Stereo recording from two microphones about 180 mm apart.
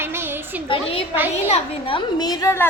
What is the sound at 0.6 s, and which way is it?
A woman's voice, 30° left (ahead or behind).